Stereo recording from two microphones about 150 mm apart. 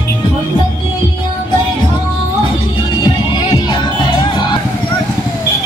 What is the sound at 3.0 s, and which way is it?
Music, 30° left (ahead or behind).